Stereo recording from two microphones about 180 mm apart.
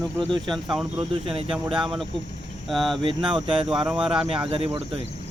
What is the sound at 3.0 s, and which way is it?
Speech, 30° right (ahead or behind).